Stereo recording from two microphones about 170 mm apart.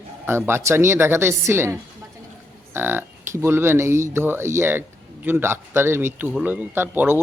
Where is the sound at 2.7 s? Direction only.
15° right (ahead or behind).